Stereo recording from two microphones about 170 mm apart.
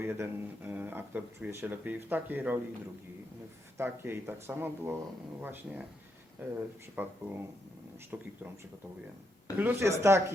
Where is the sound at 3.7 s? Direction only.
15° right (ahead or behind).